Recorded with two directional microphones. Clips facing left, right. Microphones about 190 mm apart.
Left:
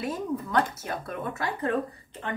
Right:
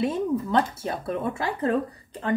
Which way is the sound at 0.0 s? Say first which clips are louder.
Right 6 dB; 25° right (ahead or behind).